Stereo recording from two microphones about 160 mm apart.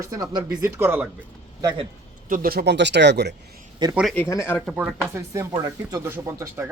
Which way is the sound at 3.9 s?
5° right (ahead or behind).